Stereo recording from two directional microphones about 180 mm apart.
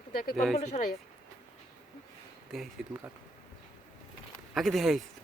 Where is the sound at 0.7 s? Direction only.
40° left (ahead or behind).